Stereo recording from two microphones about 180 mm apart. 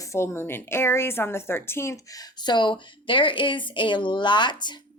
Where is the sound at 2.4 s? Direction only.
25° left (ahead or behind).